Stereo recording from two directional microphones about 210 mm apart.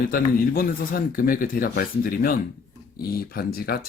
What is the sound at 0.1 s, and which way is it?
A man's voice, 45° left (ahead or behind).